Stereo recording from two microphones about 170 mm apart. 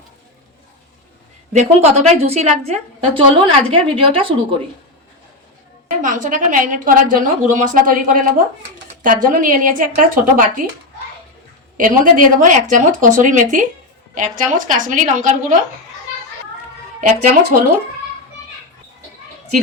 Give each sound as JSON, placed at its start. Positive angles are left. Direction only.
{"t": 1.5, "sound": "a woman's voice", "side_deg": -40}
{"t": 6.0, "sound": "a woman's voice", "side_deg": -50}
{"t": 11.8, "sound": "a woman's voice", "side_deg": -50}
{"t": 17.0, "sound": "a woman's voice", "side_deg": -50}